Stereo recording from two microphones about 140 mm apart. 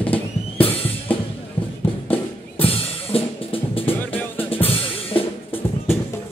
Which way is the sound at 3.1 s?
40° left (ahead or behind).